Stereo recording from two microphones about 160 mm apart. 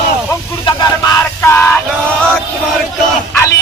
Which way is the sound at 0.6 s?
25° left (ahead or behind).